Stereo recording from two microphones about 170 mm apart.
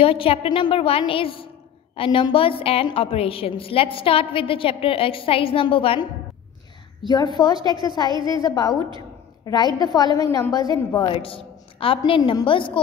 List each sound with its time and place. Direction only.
0.0 s a woman's voice: 35° left (ahead or behind)
7.1 s a woman's voice: 25° left (ahead or behind)
11.1 s a woman's voice: 30° left (ahead or behind)